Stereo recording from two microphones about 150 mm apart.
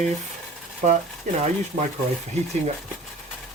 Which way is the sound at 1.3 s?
55° right (ahead or behind).